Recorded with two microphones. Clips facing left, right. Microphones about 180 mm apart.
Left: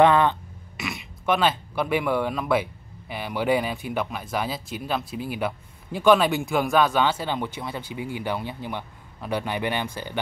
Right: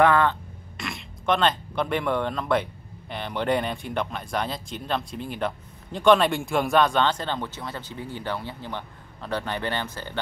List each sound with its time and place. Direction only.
0.0 s speech: 20° left (ahead or behind)
0.7 s speech: 5° left (ahead or behind)